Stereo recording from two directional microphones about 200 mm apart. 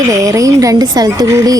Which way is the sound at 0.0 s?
15° right (ahead or behind).